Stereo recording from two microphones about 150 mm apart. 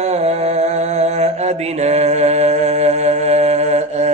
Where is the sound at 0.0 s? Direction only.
45° right (ahead or behind).